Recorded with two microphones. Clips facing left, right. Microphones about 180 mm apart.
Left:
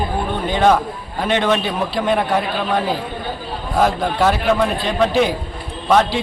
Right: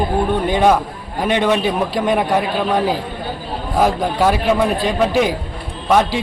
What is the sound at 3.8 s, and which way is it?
A man's voice, 10° right (ahead or behind).